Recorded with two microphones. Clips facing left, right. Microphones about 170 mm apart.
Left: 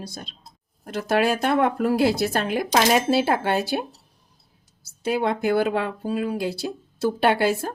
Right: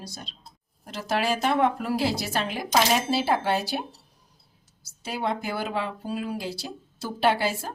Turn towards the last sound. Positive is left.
turn(degrees=55)  # may be behind; listen again after turning